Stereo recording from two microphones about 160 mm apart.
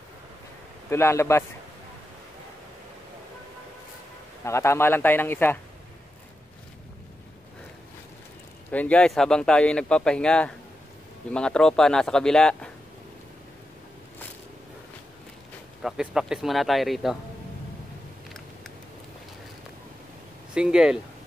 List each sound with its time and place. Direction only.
0.8 s speech: 15° left (ahead or behind)
4.5 s speech: 15° left (ahead or behind)
8.7 s speech: 10° left (ahead or behind)
15.8 s speech: 5° right (ahead or behind)
20.5 s speech: 5° right (ahead or behind)